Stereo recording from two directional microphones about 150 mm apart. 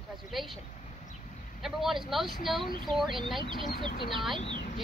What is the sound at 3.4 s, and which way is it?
Speech, 35° right (ahead or behind).